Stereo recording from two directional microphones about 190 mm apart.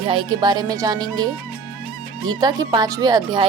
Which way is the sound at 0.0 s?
25° right (ahead or behind).